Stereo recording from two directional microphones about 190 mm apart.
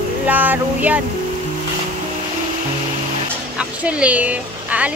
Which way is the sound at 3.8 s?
5° right (ahead or behind).